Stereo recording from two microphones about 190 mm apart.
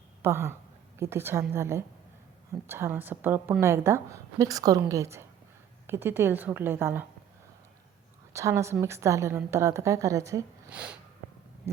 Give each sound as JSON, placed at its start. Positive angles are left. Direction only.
{"t": 0.2, "sound": "a woman's voice", "side_deg": -15}
{"t": 8.3, "sound": "a woman's voice", "side_deg": -15}
{"t": 11.6, "sound": "a sound", "side_deg": -15}